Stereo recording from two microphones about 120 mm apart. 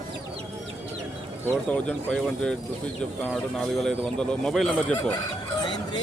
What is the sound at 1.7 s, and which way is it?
Speech, 5° left (ahead or behind).